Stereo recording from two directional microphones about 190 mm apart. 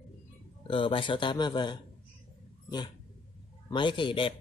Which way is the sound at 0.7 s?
25° left (ahead or behind).